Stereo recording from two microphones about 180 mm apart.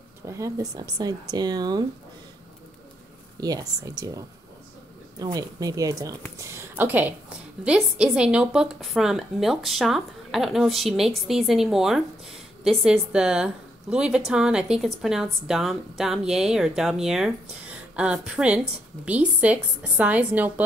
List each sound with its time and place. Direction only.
0.3 s speech: 20° right (ahead or behind)
3.3 s speech: 20° right (ahead or behind)
5.2 s a woman's voice: 20° right (ahead or behind)